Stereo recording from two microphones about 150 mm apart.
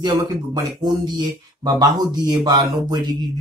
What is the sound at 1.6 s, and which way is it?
Speech, 25° right (ahead or behind).